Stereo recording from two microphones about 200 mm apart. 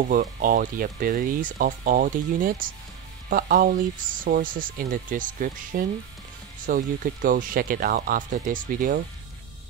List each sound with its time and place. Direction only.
0.1 s speech: 45° right (ahead or behind)